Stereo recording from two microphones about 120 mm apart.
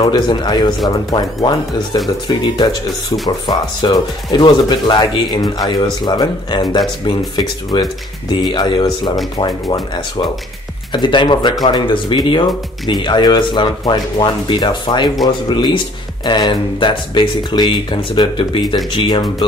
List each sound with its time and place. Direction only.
0.1 s speech: 40° left (ahead or behind)